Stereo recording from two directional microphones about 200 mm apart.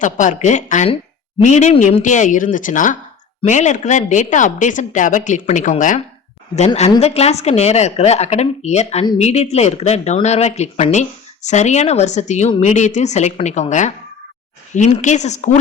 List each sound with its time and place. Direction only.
0.0 s a woman's voice: 40° left (ahead or behind)